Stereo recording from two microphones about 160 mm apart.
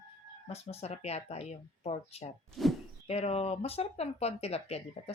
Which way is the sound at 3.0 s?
40° left (ahead or behind).